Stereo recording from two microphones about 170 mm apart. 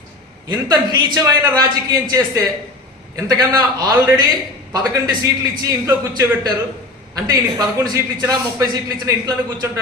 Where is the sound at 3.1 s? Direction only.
25° right (ahead or behind).